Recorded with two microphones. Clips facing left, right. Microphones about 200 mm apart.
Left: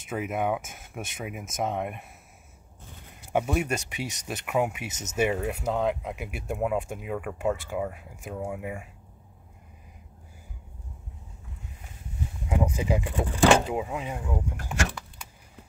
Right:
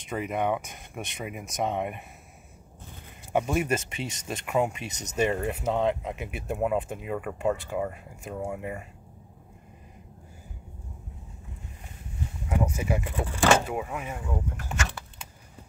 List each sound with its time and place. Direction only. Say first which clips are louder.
0.0 s speech: even; 5° left (ahead or behind)
3.3 s speech: right 1 dB; centre (ahead or behind)
12.4 s speech: left 1 dB; 15° left (ahead or behind)